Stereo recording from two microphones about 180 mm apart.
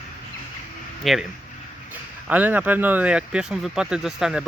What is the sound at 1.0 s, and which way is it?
Speech, centre (ahead or behind).